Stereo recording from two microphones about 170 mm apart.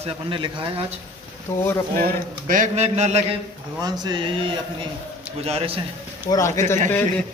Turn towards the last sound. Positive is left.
turn(degrees=10)  # may be behind; listen again after turning